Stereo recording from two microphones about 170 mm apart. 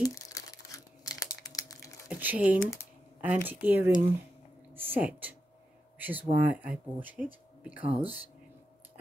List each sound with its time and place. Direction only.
0.0 s crumpling: 20° left (ahead or behind)
2.0 s speech: 10° right (ahead or behind)
5.9 s a sound: 10° right (ahead or behind)
6.3 s speech: 10° right (ahead or behind)